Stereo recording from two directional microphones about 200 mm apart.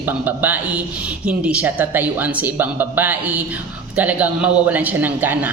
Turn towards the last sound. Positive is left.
turn(degrees=-10)  # may be behind; listen again after turning